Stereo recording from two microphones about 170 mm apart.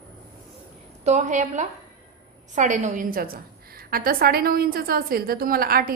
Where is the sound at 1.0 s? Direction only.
45° right (ahead or behind); by 5.9 s 60° right (ahead or behind).